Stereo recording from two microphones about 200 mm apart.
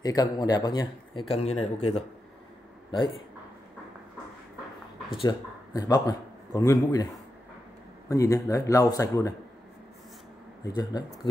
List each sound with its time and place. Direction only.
0.0 s speech: 20° left (ahead or behind)
5.1 s a man's voice: 20° left (ahead or behind)
8.1 s speech: 15° left (ahead or behind)
10.6 s speech: 20° left (ahead or behind)